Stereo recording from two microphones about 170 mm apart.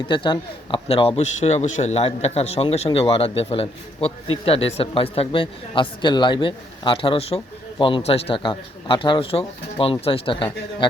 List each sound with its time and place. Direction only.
0.0 s a man's voice: 30° left (ahead or behind)